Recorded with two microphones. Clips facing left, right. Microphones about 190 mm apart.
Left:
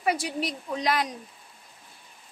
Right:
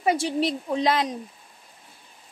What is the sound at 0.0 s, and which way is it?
Speech, 25° right (ahead or behind).